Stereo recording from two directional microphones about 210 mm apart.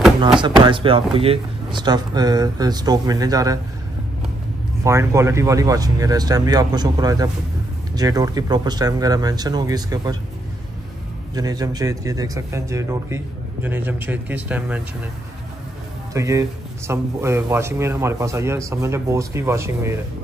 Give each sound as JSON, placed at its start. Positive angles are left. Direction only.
{"t": 0.2, "sound": "speech", "side_deg": -25}
{"t": 4.8, "sound": "speech", "side_deg": -15}
{"t": 11.3, "sound": "speech", "side_deg": -20}
{"t": 16.1, "sound": "speech", "side_deg": -15}